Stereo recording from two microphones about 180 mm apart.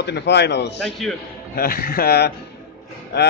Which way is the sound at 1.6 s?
55° left (ahead or behind).